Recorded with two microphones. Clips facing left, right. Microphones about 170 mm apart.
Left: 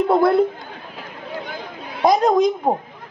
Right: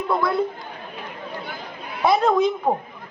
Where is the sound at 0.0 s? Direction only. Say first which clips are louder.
Left 7 dB; 55° left (ahead or behind).